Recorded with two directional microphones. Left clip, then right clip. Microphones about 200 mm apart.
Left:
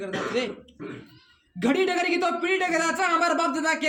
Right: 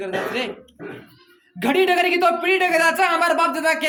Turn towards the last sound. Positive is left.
turn(degrees=10)  # may be behind; listen again after turning